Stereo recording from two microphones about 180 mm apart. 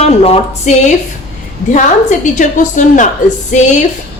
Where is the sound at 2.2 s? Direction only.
45° left (ahead or behind).